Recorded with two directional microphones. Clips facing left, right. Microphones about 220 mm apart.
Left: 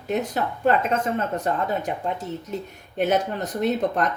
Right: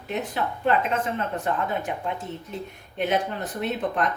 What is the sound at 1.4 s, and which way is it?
Speech, 40° left (ahead or behind).